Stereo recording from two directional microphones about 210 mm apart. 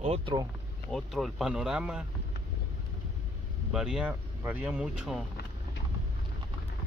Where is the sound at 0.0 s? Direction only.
25° right (ahead or behind).